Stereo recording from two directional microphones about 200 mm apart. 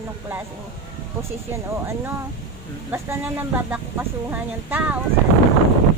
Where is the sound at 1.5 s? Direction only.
15° right (ahead or behind).